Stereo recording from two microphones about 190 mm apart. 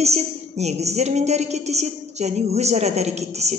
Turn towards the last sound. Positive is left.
turn(degrees=-35)  # may be behind; listen again after turning